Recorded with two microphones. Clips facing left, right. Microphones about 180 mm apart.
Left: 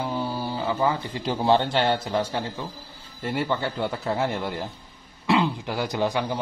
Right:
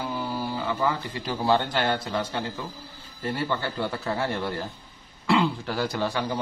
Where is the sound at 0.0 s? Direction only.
25° left (ahead or behind).